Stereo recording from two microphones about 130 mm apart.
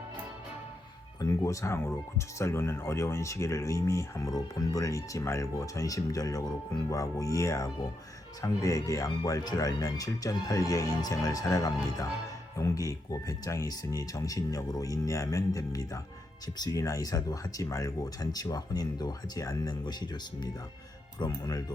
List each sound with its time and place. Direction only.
1.2 s speech: 25° left (ahead or behind)